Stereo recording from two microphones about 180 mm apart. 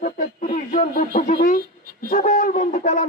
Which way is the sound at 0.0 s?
45° left (ahead or behind).